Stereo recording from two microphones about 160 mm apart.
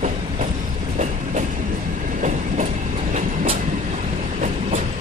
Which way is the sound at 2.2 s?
50° right (ahead or behind).